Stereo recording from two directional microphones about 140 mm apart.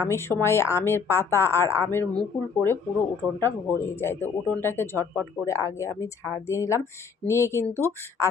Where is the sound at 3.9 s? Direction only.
15° left (ahead or behind).